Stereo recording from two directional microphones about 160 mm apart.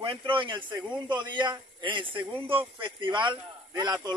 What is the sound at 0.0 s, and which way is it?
A man's voice, 35° right (ahead or behind).